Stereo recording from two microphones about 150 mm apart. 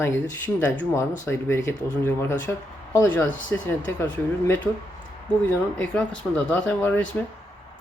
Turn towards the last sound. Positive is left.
turn(degrees=10)  # may be behind; listen again after turning